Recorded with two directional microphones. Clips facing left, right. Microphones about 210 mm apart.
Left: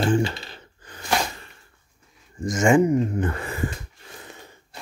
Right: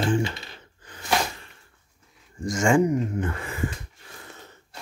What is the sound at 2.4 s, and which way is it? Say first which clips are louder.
Speech: left 3 dB; 20° left (ahead or behind).